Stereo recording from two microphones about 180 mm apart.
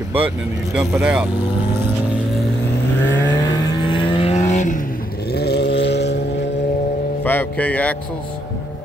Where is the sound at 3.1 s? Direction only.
20° left (ahead or behind); by 6.8 s 75° left (ahead or behind).